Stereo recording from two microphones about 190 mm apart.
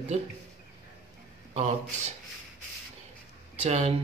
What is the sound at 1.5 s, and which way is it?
Speech, 35° right (ahead or behind).